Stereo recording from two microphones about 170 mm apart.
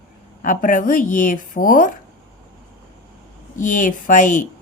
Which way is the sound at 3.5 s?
50° left (ahead or behind).